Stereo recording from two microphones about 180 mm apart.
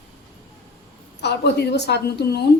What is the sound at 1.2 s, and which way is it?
A woman's voice, 70° left (ahead or behind).